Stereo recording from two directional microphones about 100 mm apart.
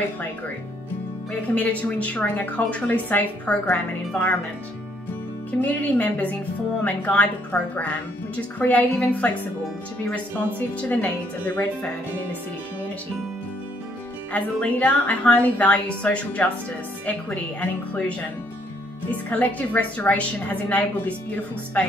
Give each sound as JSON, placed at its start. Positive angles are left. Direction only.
{"t": 1.5, "sound": "a woman's voice", "side_deg": 15}
{"t": 5.6, "sound": "a woman's voice", "side_deg": 15}
{"t": 10.8, "sound": "a woman's voice", "side_deg": 15}
{"t": 14.3, "sound": "a woman's voice", "side_deg": 15}